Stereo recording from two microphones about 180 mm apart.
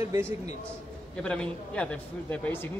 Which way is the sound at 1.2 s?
5° left (ahead or behind).